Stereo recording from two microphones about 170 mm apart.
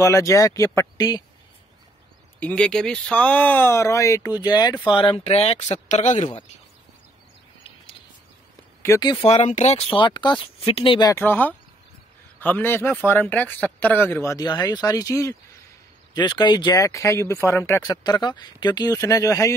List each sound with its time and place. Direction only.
0.0 s speech: 20° left (ahead or behind)
2.4 s speech: 5° left (ahead or behind); by 6.2 s 45° left (ahead or behind)
8.8 s speech: 20° left (ahead or behind)
9.2 s speech: 40° left (ahead or behind)
11.1 s speech: 10° left (ahead or behind)